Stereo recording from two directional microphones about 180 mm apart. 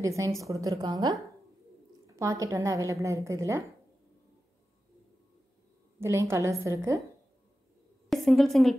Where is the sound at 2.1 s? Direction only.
15° right (ahead or behind).